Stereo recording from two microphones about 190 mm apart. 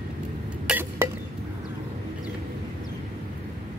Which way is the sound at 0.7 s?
10° right (ahead or behind).